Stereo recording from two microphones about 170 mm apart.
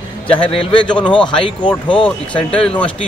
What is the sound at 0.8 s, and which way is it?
Speech, 5° left (ahead or behind).